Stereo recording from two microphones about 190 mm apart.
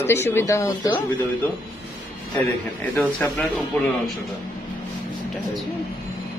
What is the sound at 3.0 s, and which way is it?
Speech, 5° left (ahead or behind).